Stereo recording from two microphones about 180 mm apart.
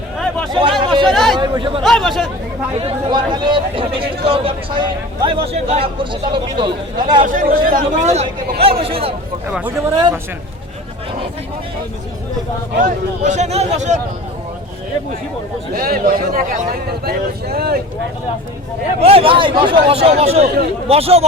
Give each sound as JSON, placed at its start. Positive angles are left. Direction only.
{"t": 0.5, "sound": "chatter", "side_deg": -25}
{"t": 1.1, "sound": "speech", "side_deg": 0}
{"t": 1.4, "sound": "speech", "side_deg": -25}
{"t": 1.8, "sound": "speech", "side_deg": 0}
{"t": 2.8, "sound": "speech", "side_deg": -25}
{"t": 7.3, "sound": "speech", "side_deg": -50}
{"t": 9.5, "sound": "speech", "side_deg": -5}
{"t": 9.9, "sound": "speech", "side_deg": -25}
{"t": 12.8, "sound": "speech", "side_deg": -40}
{"t": 15.7, "sound": "speech", "side_deg": -55}
{"t": 18.9, "sound": "speech", "side_deg": -30}